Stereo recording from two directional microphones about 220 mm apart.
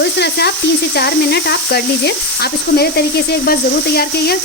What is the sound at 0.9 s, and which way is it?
Speech, 45° left (ahead or behind).